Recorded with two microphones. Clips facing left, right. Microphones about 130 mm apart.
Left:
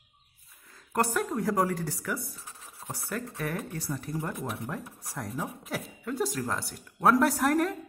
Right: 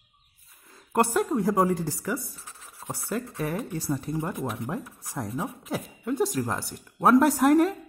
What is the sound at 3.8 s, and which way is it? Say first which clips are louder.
Speech: right 5 dB; 30° right (ahead or behind).